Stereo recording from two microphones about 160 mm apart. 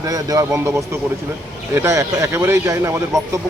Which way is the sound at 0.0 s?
20° right (ahead or behind).